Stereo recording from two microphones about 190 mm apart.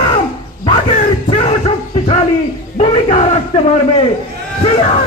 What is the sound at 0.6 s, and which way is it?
Bow-wow, 35° left (ahead or behind).